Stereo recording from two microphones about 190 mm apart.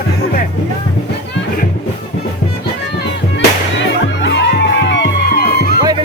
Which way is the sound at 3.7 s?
70° left (ahead or behind).